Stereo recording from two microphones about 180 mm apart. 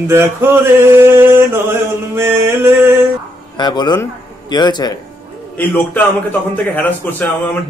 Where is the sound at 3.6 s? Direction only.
25° left (ahead or behind).